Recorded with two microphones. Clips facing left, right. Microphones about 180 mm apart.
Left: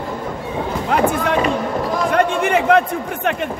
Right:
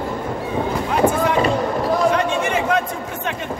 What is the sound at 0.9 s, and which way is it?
Run, 65° left (ahead or behind).